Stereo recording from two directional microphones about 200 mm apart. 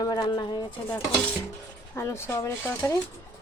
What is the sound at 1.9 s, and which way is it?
Speech, 15° left (ahead or behind).